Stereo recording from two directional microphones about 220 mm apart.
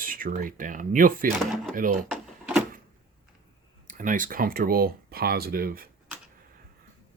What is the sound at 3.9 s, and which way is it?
Speech, 35° right (ahead or behind).